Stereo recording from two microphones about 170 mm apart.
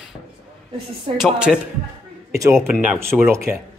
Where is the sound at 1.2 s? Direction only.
5° right (ahead or behind).